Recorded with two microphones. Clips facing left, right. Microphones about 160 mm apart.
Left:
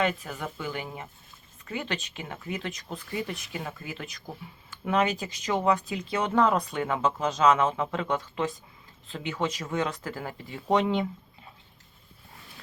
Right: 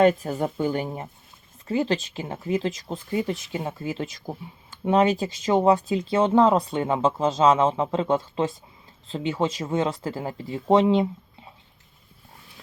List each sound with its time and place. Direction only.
0.0 s speech: 40° right (ahead or behind)